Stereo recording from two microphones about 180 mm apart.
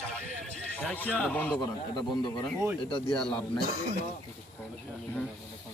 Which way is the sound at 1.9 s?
25° left (ahead or behind).